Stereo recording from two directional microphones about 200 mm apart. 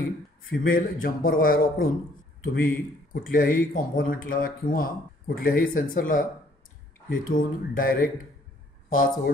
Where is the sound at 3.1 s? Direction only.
45° left (ahead or behind).